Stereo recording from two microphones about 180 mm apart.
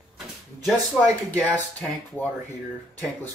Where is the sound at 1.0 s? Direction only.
5° right (ahead or behind).